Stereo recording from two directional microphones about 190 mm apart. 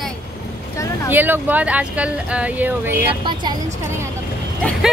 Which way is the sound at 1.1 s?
10° right (ahead or behind).